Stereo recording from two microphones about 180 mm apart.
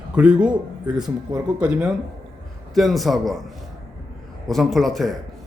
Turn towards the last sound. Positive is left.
turn(degrees=0)  # may be behind; listen again after turning